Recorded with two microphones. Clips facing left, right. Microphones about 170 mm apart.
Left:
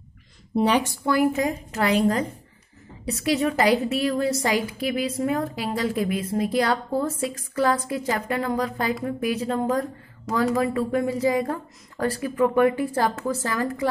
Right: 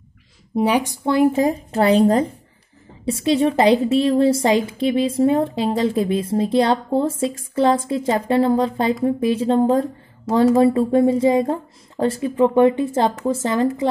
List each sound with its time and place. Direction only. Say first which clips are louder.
0.6 s a woman's voice: right 2 dB; 10° right (ahead or behind)
1.0 s a woman's voice: right 7 dB; 25° right (ahead or behind)